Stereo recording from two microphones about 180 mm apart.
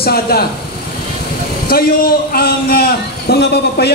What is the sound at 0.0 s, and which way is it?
Speech, 60° left (ahead or behind).